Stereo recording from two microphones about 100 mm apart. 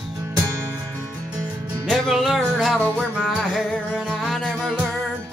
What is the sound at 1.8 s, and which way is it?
Music, centre (ahead or behind).